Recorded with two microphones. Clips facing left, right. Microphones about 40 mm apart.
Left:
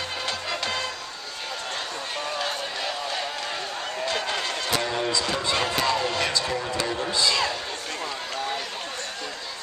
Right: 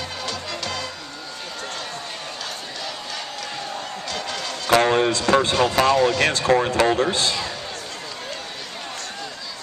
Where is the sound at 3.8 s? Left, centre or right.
Centre.